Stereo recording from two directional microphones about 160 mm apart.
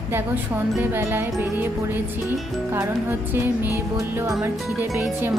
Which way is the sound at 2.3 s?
15° right (ahead or behind).